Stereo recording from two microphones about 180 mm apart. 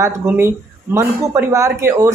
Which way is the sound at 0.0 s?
15° right (ahead or behind).